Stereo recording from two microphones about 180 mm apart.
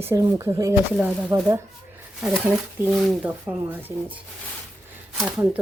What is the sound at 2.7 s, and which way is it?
Speech, 10° right (ahead or behind).